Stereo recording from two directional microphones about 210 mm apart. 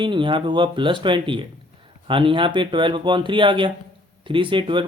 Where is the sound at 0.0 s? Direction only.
25° right (ahead or behind).